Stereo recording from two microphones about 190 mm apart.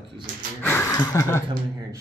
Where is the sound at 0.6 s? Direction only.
10° left (ahead or behind).